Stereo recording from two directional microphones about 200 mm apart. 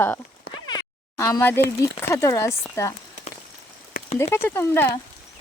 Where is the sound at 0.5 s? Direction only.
20° left (ahead or behind).